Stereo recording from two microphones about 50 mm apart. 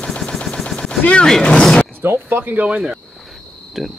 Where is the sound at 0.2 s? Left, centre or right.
Centre.